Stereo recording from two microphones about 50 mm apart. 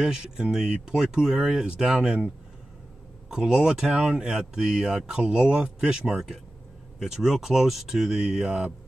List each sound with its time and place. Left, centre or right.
0.0 s speech: centre
3.3 s speech: centre
6.1 s speech: centre